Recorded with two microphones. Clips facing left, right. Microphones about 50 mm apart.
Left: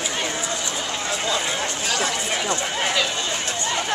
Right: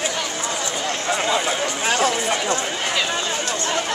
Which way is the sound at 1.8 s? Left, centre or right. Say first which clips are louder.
Right 6 dB; right.